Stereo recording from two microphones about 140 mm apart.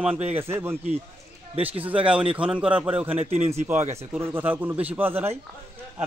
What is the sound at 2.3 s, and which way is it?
Speech, 5° right (ahead or behind).